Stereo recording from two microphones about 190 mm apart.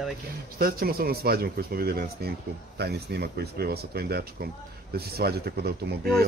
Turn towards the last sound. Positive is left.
turn(degrees=-55)  # may be behind; listen again after turning